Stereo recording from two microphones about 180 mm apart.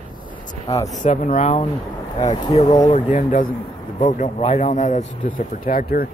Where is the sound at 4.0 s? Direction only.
45° left (ahead or behind).